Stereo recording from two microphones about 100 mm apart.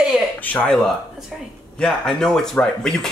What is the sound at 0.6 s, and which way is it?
Speech, 5° left (ahead or behind).